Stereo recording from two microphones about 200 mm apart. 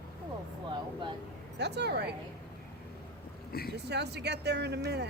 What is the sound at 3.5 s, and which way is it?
Speech, 50° left (ahead or behind).